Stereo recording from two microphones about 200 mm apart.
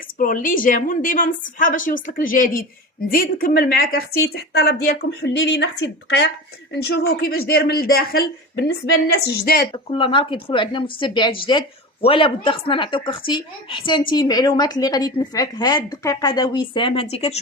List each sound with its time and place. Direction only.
0.2 s speech: 45° left (ahead or behind)
9.7 s a woman's voice: 25° left (ahead or behind)